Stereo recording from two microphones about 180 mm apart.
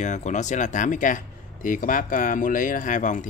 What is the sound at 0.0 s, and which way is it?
Speech, 40° left (ahead or behind).